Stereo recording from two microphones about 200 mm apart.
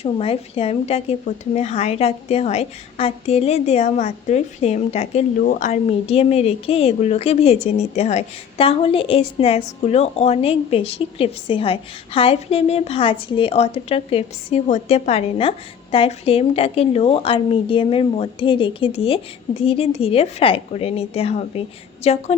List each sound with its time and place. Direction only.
0.0 s a woman's voice: 30° left (ahead or behind)